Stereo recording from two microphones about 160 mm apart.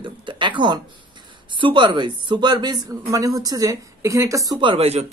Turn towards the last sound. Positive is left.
turn(degrees=-40)  # may be behind; listen again after turning